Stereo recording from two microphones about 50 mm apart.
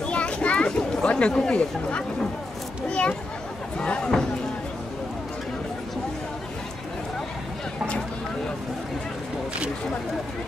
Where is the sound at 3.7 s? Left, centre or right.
Left.